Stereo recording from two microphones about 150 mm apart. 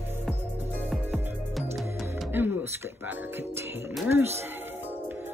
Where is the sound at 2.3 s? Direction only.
15° right (ahead or behind).